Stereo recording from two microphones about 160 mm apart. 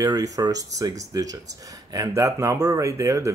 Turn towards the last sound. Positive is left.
turn(degrees=-20)  # may be behind; listen again after turning